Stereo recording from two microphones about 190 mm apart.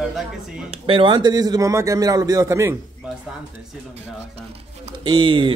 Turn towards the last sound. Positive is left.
turn(degrees=-25)  # may be behind; listen again after turning